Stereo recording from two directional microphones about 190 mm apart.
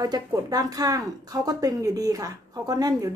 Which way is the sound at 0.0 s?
20° right (ahead or behind).